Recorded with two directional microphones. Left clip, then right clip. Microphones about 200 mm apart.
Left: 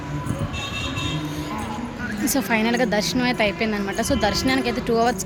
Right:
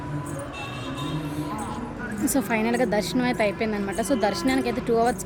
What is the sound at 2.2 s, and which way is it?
A woman's voice, 5° right (ahead or behind).